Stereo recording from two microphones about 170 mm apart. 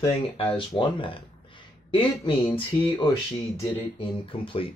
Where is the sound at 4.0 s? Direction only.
30° left (ahead or behind).